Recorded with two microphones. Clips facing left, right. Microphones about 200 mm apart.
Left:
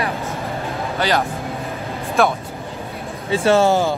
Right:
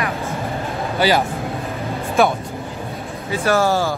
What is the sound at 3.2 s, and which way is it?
Speech, 25° left (ahead or behind).